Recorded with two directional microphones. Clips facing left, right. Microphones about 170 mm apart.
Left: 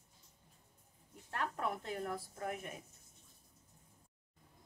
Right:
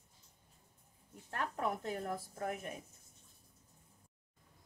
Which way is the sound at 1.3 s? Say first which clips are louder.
Right 1 dB; 45° right (ahead or behind).